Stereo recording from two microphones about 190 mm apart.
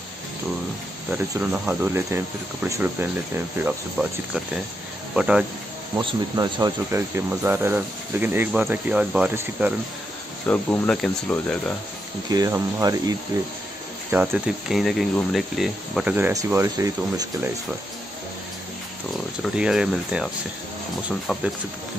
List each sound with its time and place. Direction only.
1.1 s speech: 10° right (ahead or behind)
5.9 s speech: 20° right (ahead or behind)
10.4 s speech: 10° left (ahead or behind)
12.3 s speech: 20° right (ahead or behind)
14.1 s speech: 5° right (ahead or behind)
19.4 s speech: 5° right (ahead or behind)